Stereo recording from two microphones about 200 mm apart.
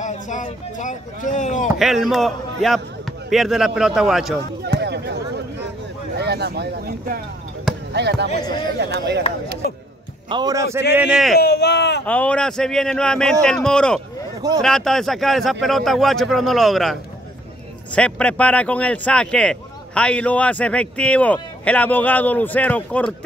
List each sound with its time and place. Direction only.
0.0 s speech: 40° left (ahead or behind)
1.8 s speech: centre (ahead or behind)
4.6 s a sound: 55° right (ahead or behind)
6.1 s speech: 55° right (ahead or behind)
9.6 s speech: 50° left (ahead or behind)
10.3 s a man's voice: 20° right (ahead or behind)
11.1 s speech: centre (ahead or behind)
11.3 s speech: 55° left (ahead or behind)
12.1 s speech: 5° left (ahead or behind)